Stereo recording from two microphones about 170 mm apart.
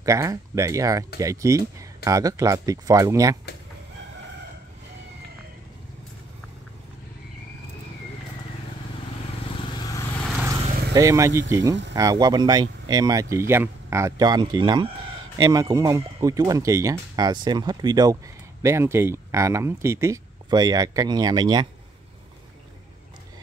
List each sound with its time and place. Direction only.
0.0 s speech: 20° right (ahead or behind)
9.7 s vehicle: 25° left (ahead or behind)
11.0 s speech: 20° right (ahead or behind)